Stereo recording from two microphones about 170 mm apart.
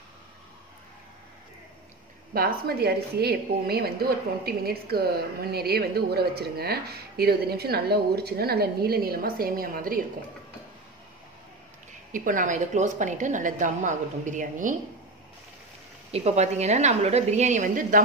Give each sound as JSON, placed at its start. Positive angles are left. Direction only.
{"t": 2.3, "sound": "a woman's voice", "side_deg": -60}
{"t": 12.1, "sound": "a woman's voice", "side_deg": -50}
{"t": 16.1, "sound": "a woman's voice", "side_deg": -40}